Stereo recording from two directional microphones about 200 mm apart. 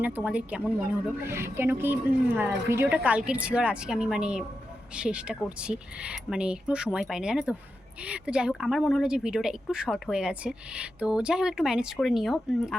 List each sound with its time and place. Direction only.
0.0 s a woman's voice: 10° right (ahead or behind)